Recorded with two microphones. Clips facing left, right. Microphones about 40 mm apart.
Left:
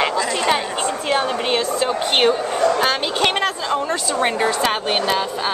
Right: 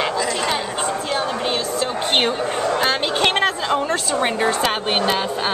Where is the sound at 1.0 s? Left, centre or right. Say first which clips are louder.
Left 2 dB; left.